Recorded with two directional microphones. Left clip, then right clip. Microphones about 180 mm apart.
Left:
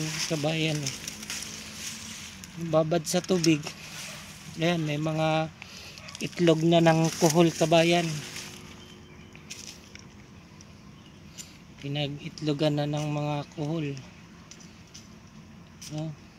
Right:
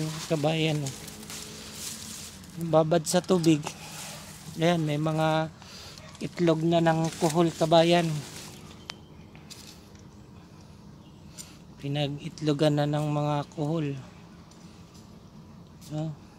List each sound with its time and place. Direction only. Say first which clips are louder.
0.3 s a man's voice: right 3 dB; centre (ahead or behind)
2.7 s a man's voice: right 2 dB; centre (ahead or behind); by 7.0 s 30° left (ahead or behind)
7.0 s speech: left 3 dB; 45° left (ahead or behind)
7.3 s speech: right 1 dB; 20° left (ahead or behind)
7.8 s a man's voice: right 1 dB; centre (ahead or behind)
11.8 s a man's voice: right 1 dB; centre (ahead or behind)
15.9 s a man's voice: right 2 dB; centre (ahead or behind)